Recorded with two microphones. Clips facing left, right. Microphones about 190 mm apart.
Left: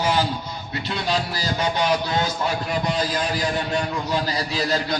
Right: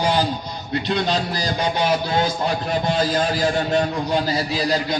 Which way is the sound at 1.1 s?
20° right (ahead or behind).